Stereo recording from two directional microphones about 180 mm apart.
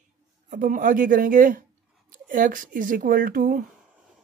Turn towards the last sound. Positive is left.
turn(degrees=-50)  # may be behind; listen again after turning